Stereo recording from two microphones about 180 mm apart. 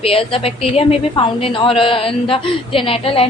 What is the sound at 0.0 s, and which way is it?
A woman's voice, 30° left (ahead or behind).